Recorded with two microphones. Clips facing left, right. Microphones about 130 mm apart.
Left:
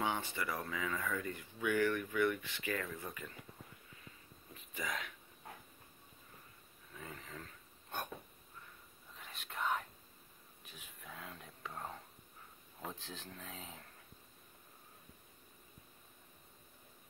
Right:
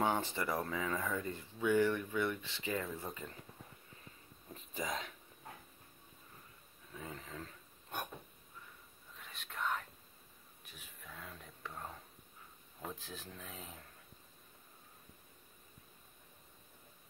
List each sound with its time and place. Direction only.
0.0 s a sound: 35° right (ahead or behind)
0.6 s speech: 35° right (ahead or behind); by 3.4 s 10° right (ahead or behind)
4.6 s speech: 35° right (ahead or behind)
7.0 s speech: 20° right (ahead or behind)
9.1 s whispering: centre (ahead or behind)
10.6 s a sound: centre (ahead or behind)
12.8 s speech: centre (ahead or behind)